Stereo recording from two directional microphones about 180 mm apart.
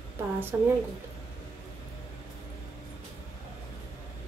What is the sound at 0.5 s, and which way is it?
Speech, 15° right (ahead or behind).